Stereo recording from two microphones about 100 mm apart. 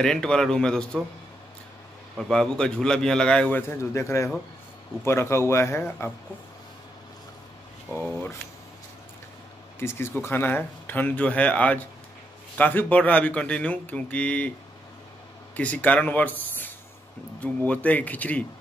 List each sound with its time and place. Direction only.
0.0 s speech: 5° left (ahead or behind)
2.1 s speech: 5° left (ahead or behind)
3.9 s speech: 30° left (ahead or behind)
7.9 s speech: 15° left (ahead or behind)
9.8 s speech: 25° left (ahead or behind)
15.5 s speech: 15° left (ahead or behind)